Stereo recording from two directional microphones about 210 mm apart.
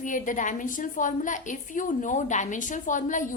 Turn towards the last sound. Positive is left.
turn(degrees=35)  # may be behind; listen again after turning